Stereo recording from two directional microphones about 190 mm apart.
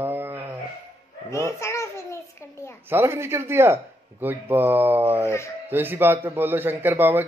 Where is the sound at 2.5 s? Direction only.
15° left (ahead or behind).